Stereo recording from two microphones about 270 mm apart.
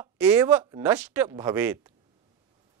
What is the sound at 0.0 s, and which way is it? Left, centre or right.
Speech, centre.